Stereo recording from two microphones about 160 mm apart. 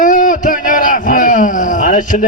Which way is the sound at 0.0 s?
55° left (ahead or behind).